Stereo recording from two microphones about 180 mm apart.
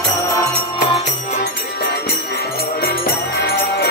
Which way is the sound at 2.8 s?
55° left (ahead or behind).